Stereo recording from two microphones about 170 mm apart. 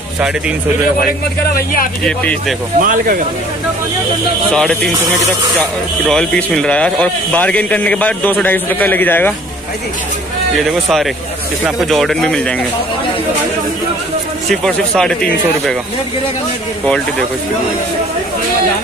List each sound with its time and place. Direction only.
1.4 s speech: 60° left (ahead or behind)
2.0 s speech: 5° left (ahead or behind)
2.8 s speech: 50° right (ahead or behind)
4.5 s speech: 5° left (ahead or behind)
6.0 s speech: 5° left (ahead or behind)
11.6 s speech: centre (ahead or behind)
14.5 s speech: 5° left (ahead or behind)